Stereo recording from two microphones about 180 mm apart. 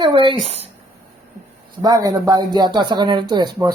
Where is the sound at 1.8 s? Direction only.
20° right (ahead or behind).